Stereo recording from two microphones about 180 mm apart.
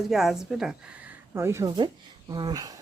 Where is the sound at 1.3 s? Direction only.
15° right (ahead or behind).